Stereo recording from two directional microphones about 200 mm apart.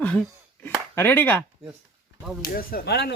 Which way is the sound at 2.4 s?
45° left (ahead or behind).